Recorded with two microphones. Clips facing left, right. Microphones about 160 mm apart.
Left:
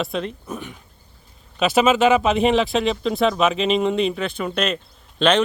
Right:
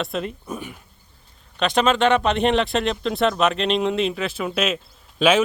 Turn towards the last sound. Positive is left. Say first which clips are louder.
# even
turn(degrees=-5)  # may be behind; listen again after turning